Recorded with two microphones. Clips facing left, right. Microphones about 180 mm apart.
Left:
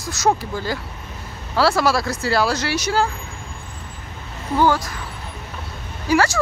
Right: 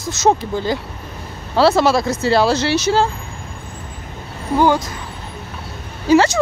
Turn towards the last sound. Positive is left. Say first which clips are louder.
# right 5 dB
turn(degrees=-20)  # may be behind; listen again after turning